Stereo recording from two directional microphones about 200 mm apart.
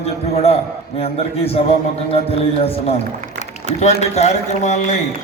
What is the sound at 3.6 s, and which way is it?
A man's voice, 35° left (ahead or behind).